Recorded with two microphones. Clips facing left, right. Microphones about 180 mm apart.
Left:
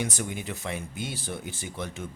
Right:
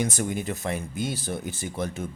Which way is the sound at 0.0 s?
45° right (ahead or behind).